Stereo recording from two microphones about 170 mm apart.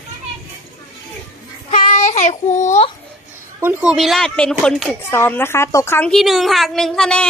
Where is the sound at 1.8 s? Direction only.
50° left (ahead or behind).